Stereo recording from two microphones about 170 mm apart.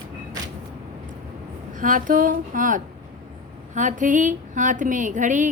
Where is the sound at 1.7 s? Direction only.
50° right (ahead or behind).